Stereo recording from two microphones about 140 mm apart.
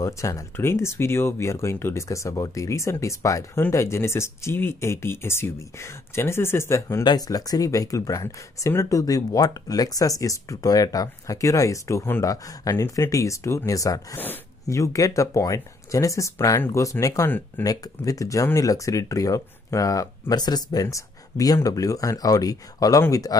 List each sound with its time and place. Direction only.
0.0 s speech: 20° left (ahead or behind)